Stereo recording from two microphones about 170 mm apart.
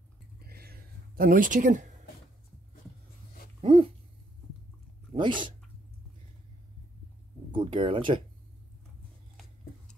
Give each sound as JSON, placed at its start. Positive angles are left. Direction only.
{"t": 0.4, "sound": "a sound", "side_deg": -65}
{"t": 3.6, "sound": "dog", "side_deg": -30}
{"t": 5.1, "sound": "speech", "side_deg": -30}
{"t": 7.5, "sound": "speech", "side_deg": -30}